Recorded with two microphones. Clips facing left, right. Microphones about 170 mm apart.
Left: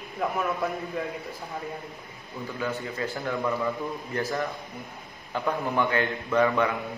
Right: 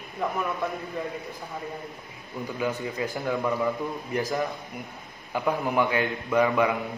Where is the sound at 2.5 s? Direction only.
15° right (ahead or behind).